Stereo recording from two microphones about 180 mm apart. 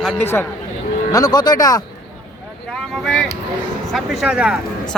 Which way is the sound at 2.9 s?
Centre (ahead or behind).